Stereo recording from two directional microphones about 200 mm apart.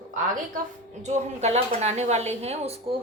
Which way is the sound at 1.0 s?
35° right (ahead or behind).